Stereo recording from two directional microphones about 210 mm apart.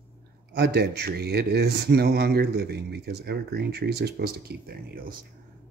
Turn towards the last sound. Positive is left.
turn(degrees=-45)  # may be behind; listen again after turning